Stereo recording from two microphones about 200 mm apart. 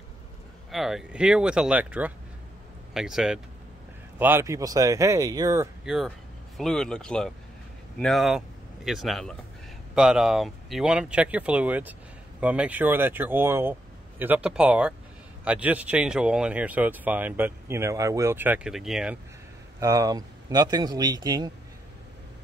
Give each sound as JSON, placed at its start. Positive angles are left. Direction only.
{"t": 0.7, "sound": "speech", "side_deg": 0}
{"t": 5.9, "sound": "speech", "side_deg": 0}
{"t": 19.8, "sound": "speech", "side_deg": -15}